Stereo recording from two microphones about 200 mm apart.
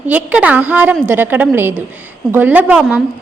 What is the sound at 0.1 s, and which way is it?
A woman's voice, 5° right (ahead or behind).